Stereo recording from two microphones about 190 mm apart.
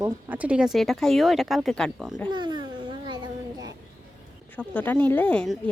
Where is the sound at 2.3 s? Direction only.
25° right (ahead or behind).